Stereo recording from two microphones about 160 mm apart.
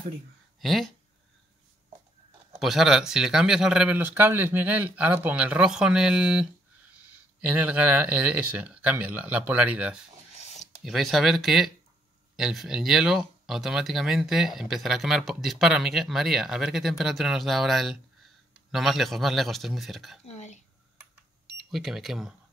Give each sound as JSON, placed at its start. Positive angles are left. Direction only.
{"t": 0.6, "sound": "speech", "side_deg": 0}
{"t": 2.6, "sound": "speech", "side_deg": 0}
{"t": 20.2, "sound": "a sound", "side_deg": 45}
{"t": 21.6, "sound": "speech", "side_deg": 0}